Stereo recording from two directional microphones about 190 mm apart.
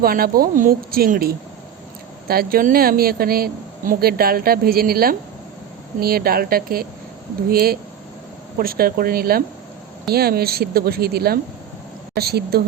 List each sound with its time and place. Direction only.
0.0 s a woman's voice: 50° right (ahead or behind)
8.5 s a woman's voice: 50° right (ahead or behind)